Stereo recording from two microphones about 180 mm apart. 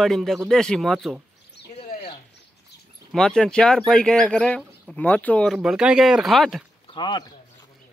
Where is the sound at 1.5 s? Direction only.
65° left (ahead or behind).